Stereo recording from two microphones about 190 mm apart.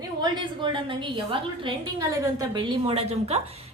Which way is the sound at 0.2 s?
25° right (ahead or behind).